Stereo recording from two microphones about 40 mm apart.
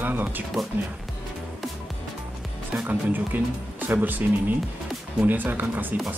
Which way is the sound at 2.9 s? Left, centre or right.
Right.